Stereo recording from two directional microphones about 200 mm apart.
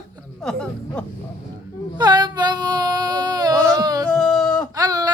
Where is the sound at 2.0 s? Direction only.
20° right (ahead or behind).